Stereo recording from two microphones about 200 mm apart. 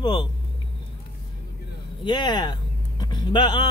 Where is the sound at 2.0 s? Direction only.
20° left (ahead or behind).